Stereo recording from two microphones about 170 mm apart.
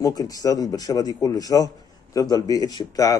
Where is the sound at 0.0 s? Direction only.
20° left (ahead or behind).